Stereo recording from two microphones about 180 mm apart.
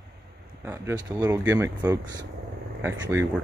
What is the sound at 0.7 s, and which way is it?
Speech, 15° right (ahead or behind).